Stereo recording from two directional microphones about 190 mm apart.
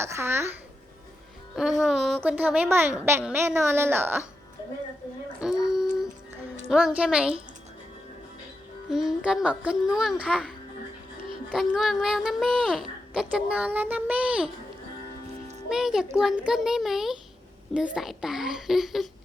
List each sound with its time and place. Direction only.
0.0 s a woman's voice: 15° right (ahead or behind)
1.8 s a woman's voice: centre (ahead or behind)
5.4 s music: 5° right (ahead or behind)
6.7 s a child's voice: 5° right (ahead or behind)
8.9 s a child's voice: centre (ahead or behind)
11.5 s a child's voice: centre (ahead or behind)
15.7 s a child's voice: centre (ahead or behind)